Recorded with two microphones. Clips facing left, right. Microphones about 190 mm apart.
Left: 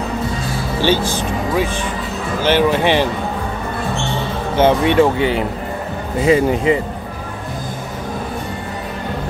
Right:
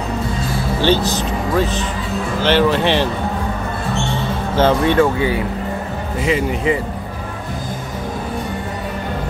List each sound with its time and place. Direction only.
1.1 s speech: 10° left (ahead or behind)
4.6 s speech: 20° left (ahead or behind)
6.2 s speech: 35° left (ahead or behind)